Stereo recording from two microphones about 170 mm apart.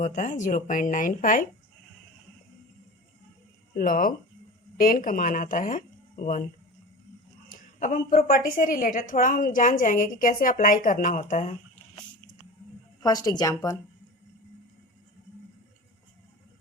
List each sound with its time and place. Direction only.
0.0 s a woman's voice: 45° left (ahead or behind)
3.8 s a woman's voice: 55° left (ahead or behind)
7.5 s a woman's voice: 50° left (ahead or behind)
13.0 s a woman's voice: 20° left (ahead or behind)